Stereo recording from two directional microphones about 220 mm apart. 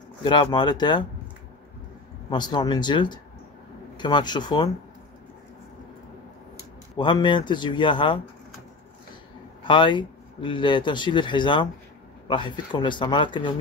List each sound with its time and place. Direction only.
0.2 s speech: 20° left (ahead or behind)
2.2 s speech: 20° left (ahead or behind)
7.0 s speech: 20° left (ahead or behind)
9.7 s speech: 20° left (ahead or behind)